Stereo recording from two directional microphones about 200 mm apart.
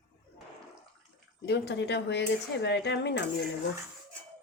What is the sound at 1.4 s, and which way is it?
Speech, 55° left (ahead or behind).